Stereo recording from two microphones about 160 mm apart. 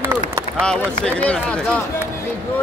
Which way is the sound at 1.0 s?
5° left (ahead or behind).